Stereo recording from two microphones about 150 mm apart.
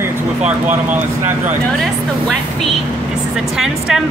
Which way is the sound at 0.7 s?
10° right (ahead or behind).